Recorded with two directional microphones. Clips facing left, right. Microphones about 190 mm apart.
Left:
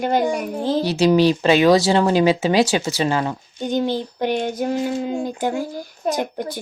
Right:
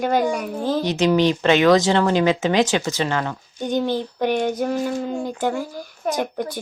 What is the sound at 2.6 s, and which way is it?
Speech, 40° left (ahead or behind).